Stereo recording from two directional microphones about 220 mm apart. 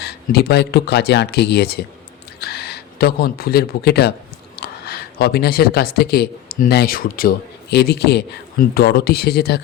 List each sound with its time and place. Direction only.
0.0 s speech: 45° left (ahead or behind)